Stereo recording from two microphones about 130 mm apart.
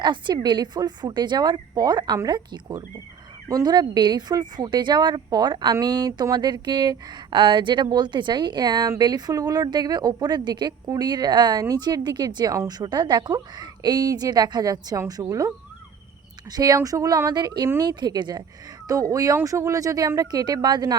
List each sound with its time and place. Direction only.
0.0 s speech: 35° right (ahead or behind)